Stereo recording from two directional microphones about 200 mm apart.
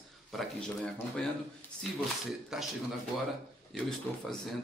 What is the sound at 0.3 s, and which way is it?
Speech, centre (ahead or behind).